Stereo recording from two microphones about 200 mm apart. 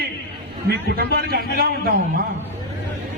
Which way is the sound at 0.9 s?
50° right (ahead or behind).